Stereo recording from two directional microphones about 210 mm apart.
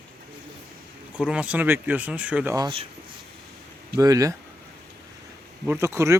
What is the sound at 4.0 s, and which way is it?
Speech, 15° right (ahead or behind).